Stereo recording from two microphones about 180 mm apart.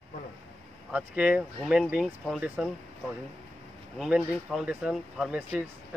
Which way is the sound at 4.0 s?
Centre (ahead or behind).